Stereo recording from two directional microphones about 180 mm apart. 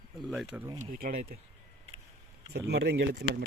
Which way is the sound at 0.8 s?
55° right (ahead or behind).